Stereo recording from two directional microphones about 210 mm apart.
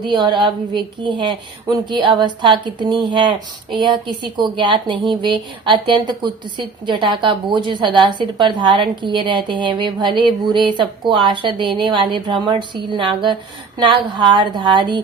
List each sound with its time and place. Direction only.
0.0 s a woman's voice: 20° right (ahead or behind)